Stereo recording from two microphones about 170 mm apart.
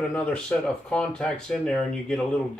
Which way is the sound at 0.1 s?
5° left (ahead or behind).